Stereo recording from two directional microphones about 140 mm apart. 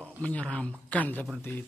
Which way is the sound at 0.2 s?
10° left (ahead or behind).